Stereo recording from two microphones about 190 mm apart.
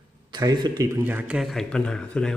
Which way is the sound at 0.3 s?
20° right (ahead or behind).